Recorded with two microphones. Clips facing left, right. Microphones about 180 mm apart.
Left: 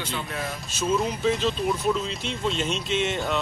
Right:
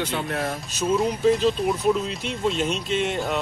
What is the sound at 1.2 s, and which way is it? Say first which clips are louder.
Speech: right 5 dB; 5° right (ahead or behind).